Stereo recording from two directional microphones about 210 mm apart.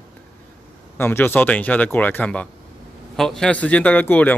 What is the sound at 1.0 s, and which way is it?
Speech, 10° left (ahead or behind).